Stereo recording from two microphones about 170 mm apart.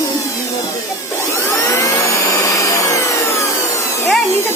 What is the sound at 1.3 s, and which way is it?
Vacuum cleaner, 15° left (ahead or behind).